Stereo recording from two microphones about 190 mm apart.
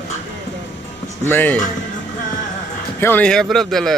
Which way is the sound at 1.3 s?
10° left (ahead or behind).